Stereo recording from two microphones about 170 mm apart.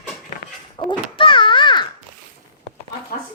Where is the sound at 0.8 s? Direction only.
30° left (ahead or behind).